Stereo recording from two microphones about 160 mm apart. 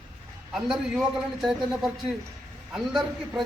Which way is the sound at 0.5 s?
Centre (ahead or behind).